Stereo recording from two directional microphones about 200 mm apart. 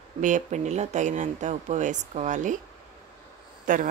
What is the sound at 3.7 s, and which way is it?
Speech, 40° right (ahead or behind).